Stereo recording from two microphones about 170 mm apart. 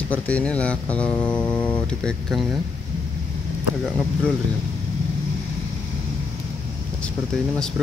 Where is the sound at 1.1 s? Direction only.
25° left (ahead or behind).